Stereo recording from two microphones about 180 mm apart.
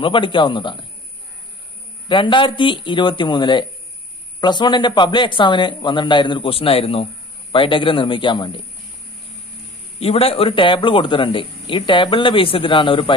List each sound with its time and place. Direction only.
0.0 s a man's voice: 30° left (ahead or behind)
2.0 s a man's voice: 25° left (ahead or behind)
9.9 s a man's voice: 35° left (ahead or behind)